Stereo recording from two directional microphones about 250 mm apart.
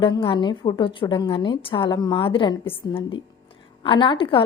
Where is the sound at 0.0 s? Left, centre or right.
Centre.